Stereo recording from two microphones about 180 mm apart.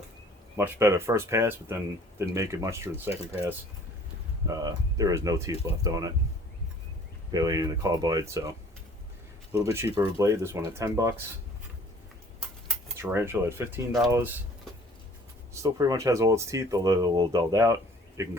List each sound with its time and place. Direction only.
0.5 s speech: 15° right (ahead or behind)
3.1 s speech: 35° left (ahead or behind)
4.4 s speech: 20° right (ahead or behind)
7.3 s speech: 20° right (ahead or behind)
9.6 s speech: 15° right (ahead or behind)
13.0 s speech: 15° right (ahead or behind)
15.6 s speech: 15° right (ahead or behind)